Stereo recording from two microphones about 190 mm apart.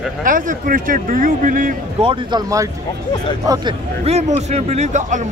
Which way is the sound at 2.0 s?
25° right (ahead or behind).